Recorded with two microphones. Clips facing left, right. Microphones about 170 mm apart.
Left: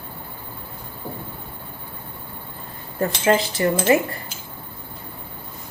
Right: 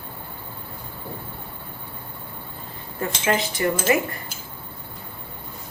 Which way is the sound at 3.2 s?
30° left (ahead or behind).